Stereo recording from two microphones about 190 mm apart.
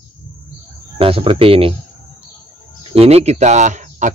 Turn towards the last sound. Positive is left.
turn(degrees=-40)  # may be behind; listen again after turning